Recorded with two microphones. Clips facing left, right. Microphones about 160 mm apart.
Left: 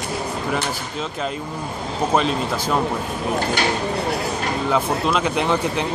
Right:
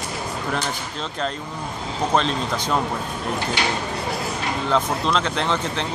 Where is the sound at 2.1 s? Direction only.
5° left (ahead or behind).